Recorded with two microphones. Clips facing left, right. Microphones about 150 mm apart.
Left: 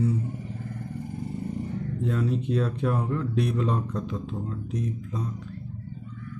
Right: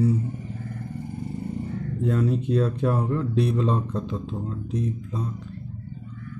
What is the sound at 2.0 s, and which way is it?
Speech, 45° right (ahead or behind).